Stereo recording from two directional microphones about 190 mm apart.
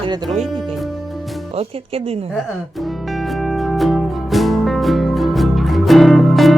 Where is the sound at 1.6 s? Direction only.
30° right (ahead or behind).